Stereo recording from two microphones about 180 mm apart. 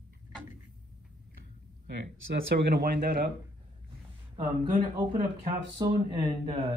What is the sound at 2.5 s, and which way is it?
Speech, 60° right (ahead or behind).